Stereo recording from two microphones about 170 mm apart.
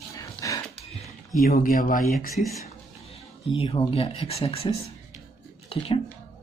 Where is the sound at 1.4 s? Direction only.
55° left (ahead or behind).